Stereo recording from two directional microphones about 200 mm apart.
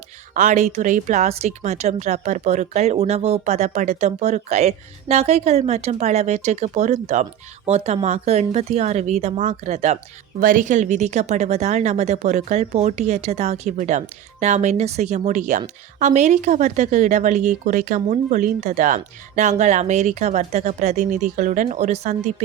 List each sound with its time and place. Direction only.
0.3 s speech: 40° right (ahead or behind)